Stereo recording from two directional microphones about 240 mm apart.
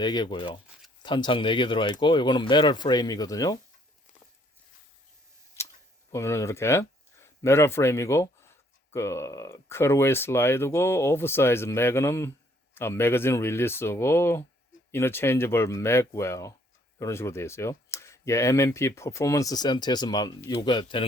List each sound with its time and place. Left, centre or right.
0.0 s speech: centre
6.1 s speech: centre